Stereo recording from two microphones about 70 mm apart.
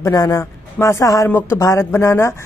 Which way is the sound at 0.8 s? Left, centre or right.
Left.